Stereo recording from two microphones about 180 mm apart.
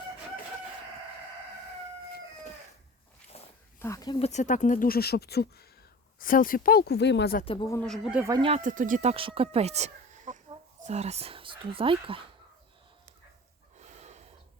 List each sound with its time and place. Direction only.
3.3 s a sound: 35° left (ahead or behind)
3.8 s speech: 15° left (ahead or behind)
4.2 s speech: 40° left (ahead or behind); by 5.6 s 60° left (ahead or behind)
6.1 s speech: 50° left (ahead or behind); by 7.3 s 75° left (ahead or behind)
7.4 s speech: 30° left (ahead or behind)
7.7 s speech: 5° left (ahead or behind)
8.4 s speech: 30° right (ahead or behind)
8.6 s speech: 45° right (ahead or behind); by 12.2 s 30° right (ahead or behind)
13.9 s snort: 40° right (ahead or behind)